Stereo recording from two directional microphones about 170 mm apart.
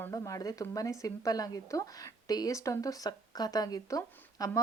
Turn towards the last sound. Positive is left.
turn(degrees=15)  # may be behind; listen again after turning